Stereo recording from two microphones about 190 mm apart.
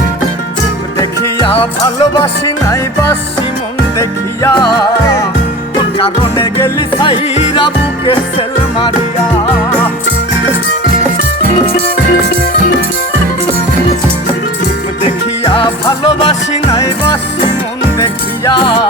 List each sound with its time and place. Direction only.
1.5 s music: 30° left (ahead or behind)
4.4 s music: 20° left (ahead or behind)
15.0 s music: 25° left (ahead or behind)
18.4 s music: 25° left (ahead or behind)